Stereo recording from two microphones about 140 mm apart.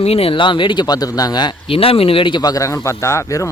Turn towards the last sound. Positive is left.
turn(degrees=20)  # may be behind; listen again after turning